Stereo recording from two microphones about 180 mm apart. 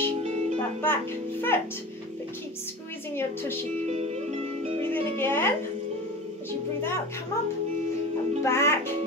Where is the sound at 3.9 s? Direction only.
35° right (ahead or behind).